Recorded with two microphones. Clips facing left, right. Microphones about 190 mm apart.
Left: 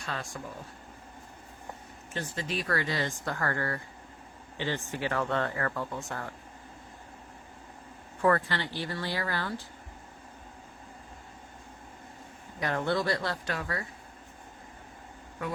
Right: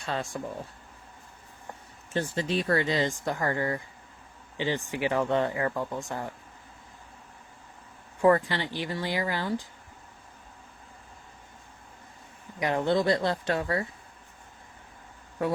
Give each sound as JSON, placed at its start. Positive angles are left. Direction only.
{"t": 0.0, "sound": "speech", "side_deg": -25}
{"t": 2.1, "sound": "speech", "side_deg": -30}
{"t": 8.2, "sound": "speech", "side_deg": -15}
{"t": 12.5, "sound": "speech", "side_deg": -15}